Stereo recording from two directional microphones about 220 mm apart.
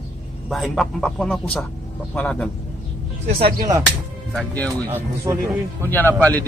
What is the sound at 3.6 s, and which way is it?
Speech, 20° right (ahead or behind).